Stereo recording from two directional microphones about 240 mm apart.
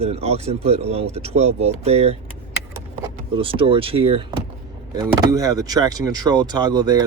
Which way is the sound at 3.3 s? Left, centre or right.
Right.